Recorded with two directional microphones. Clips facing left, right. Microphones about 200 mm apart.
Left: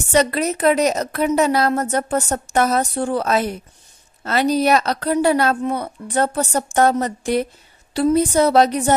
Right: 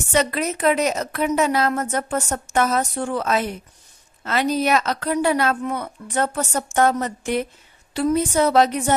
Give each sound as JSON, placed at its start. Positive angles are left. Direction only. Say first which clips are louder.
{"t": 0.1, "sound": "a woman's voice", "louder": "left 4 dB", "side_deg": 35}